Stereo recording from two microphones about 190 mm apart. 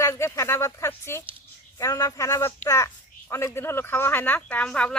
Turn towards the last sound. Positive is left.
turn(degrees=5)  # may be behind; listen again after turning